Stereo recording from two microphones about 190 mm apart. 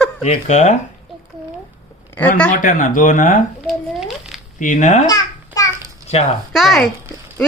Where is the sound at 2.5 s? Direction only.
45° left (ahead or behind).